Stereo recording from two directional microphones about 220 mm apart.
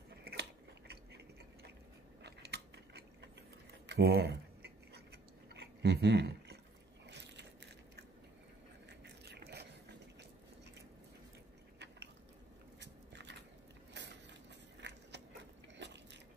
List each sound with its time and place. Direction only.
0.1 s chewing: 45° right (ahead or behind)
2.2 s gears: 50° right (ahead or behind)
3.8 s scissors: 50° right (ahead or behind)
5.5 s a sound: 50° right (ahead or behind)
7.1 s biting: 50° right (ahead or behind)
9.0 s biting: 45° right (ahead or behind)
12.8 s biting: 50° right (ahead or behind)
14.8 s a sound: 50° right (ahead or behind)
15.8 s biting: 50° right (ahead or behind)